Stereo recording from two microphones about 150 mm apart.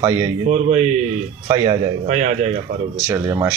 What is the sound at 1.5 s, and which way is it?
Speech, 30° right (ahead or behind).